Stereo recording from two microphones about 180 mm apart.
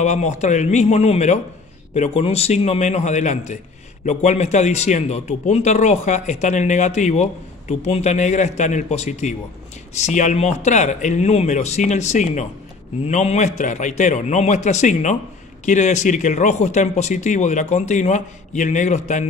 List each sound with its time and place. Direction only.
0.0 s speech: 40° left (ahead or behind)